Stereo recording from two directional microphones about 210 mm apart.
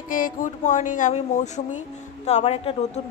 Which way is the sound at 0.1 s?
40° left (ahead or behind).